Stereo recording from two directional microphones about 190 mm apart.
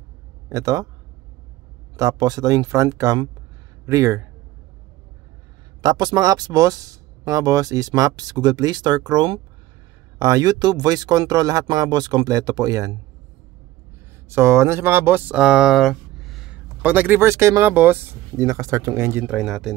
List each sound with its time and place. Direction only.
0.5 s speech: 20° right (ahead or behind)
2.0 s speech: 20° right (ahead or behind)
5.8 s speech: 20° right (ahead or behind)
14.3 s speech: 15° right (ahead or behind)
19.3 s speech: centre (ahead or behind)